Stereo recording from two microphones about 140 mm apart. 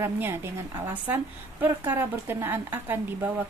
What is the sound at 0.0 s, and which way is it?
A woman's voice, 15° right (ahead or behind).